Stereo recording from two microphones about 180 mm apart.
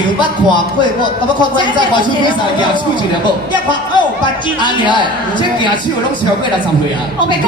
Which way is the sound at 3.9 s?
25° left (ahead or behind).